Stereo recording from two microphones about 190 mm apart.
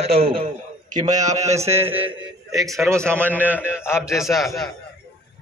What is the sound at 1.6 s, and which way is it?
A man's voice, 15° right (ahead or behind).